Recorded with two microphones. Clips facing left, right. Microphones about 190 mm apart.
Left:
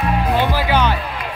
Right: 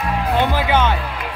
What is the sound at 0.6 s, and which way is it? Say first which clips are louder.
Music: even; 20° right (ahead or behind).